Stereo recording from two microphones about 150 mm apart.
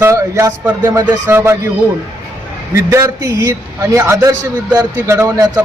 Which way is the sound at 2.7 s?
20° right (ahead or behind).